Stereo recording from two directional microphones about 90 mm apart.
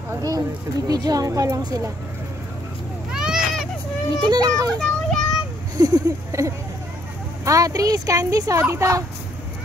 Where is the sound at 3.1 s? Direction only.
5° right (ahead or behind).